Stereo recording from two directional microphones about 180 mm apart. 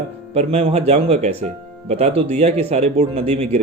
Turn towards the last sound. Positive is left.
turn(degrees=-35)  # may be behind; listen again after turning